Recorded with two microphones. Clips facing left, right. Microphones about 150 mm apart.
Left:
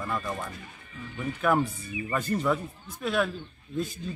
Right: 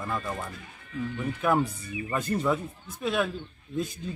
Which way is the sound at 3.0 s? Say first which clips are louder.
Even; 20° right (ahead or behind).